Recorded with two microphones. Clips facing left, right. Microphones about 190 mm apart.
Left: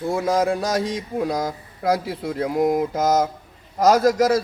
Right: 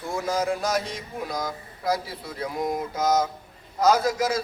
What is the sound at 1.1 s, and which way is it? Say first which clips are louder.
Speech: left 6 dB; 75° left (ahead or behind).